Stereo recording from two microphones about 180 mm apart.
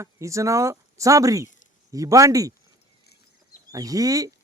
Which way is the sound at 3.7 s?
20° right (ahead or behind).